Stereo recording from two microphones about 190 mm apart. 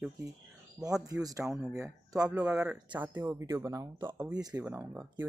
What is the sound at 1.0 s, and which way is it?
Speech, 20° right (ahead or behind).